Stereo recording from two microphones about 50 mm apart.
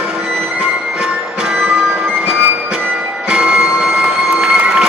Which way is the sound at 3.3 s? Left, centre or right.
Centre.